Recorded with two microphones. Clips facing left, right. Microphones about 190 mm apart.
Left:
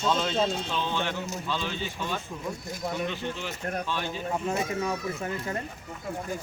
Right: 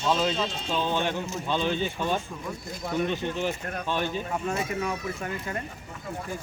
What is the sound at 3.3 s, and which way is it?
Speech, 50° right (ahead or behind).